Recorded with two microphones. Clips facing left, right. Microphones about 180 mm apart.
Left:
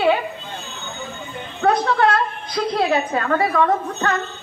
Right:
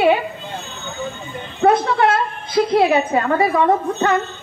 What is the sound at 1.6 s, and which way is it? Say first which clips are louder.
A woman's voice: right 2 dB; 20° right (ahead or behind).